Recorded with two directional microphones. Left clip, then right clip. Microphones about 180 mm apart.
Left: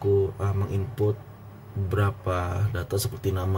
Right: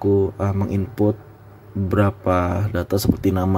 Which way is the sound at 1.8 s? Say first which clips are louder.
Right 9 dB; 35° right (ahead or behind).